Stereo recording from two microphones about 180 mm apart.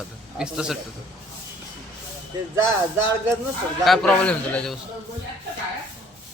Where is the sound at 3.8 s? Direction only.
Centre (ahead or behind).